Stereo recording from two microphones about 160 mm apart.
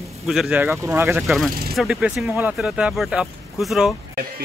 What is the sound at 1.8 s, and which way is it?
Speech, 5° right (ahead or behind).